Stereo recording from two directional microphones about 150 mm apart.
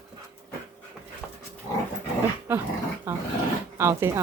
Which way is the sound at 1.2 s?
10° right (ahead or behind).